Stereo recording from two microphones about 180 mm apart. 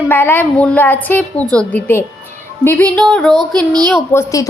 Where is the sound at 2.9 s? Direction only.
5° left (ahead or behind).